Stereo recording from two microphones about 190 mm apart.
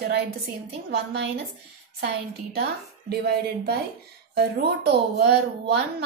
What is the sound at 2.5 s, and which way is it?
A woman's voice, 60° right (ahead or behind).